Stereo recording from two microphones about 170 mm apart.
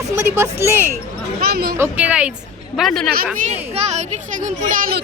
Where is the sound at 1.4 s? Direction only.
65° right (ahead or behind).